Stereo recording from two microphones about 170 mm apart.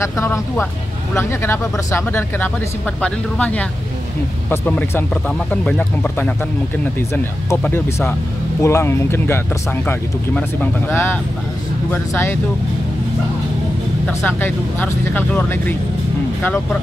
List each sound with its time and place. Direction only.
0.0 s speech: 15° left (ahead or behind)
14.0 s speech: 10° left (ahead or behind)